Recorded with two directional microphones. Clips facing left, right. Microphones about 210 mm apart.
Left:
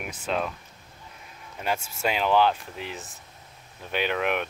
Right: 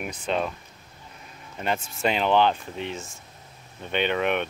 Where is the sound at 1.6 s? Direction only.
5° left (ahead or behind).